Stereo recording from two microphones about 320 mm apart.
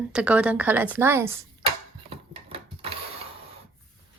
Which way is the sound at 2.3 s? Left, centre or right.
Centre.